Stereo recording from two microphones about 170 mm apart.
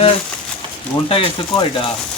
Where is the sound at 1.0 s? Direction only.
30° left (ahead or behind).